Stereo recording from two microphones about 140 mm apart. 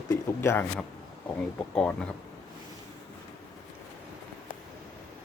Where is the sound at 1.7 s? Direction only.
5° left (ahead or behind).